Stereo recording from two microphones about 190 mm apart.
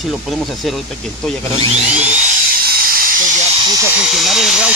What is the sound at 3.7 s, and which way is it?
Dental drill, 15° right (ahead or behind).